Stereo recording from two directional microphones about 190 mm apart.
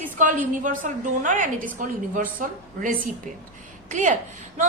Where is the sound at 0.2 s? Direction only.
45° right (ahead or behind).